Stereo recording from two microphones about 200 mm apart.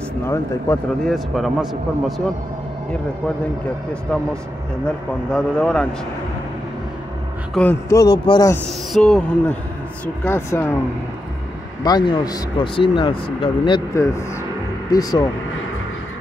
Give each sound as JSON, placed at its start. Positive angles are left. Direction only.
{"t": 0.7, "sound": "speech", "side_deg": 10}
{"t": 1.0, "sound": "a man's voice", "side_deg": 0}
{"t": 4.1, "sound": "a man's voice", "side_deg": 5}
{"t": 7.6, "sound": "a man's voice", "side_deg": 0}
{"t": 7.9, "sound": "speech", "side_deg": 20}
{"t": 8.9, "sound": "a man's voice", "side_deg": 5}
{"t": 11.8, "sound": "speech", "side_deg": 20}